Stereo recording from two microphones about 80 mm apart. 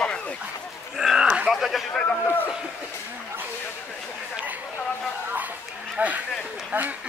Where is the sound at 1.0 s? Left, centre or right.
Centre.